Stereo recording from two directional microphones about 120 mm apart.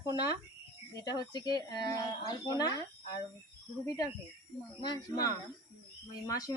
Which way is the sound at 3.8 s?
30° left (ahead or behind).